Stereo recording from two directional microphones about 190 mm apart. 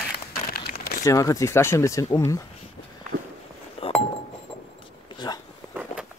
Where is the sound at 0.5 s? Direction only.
55° left (ahead or behind).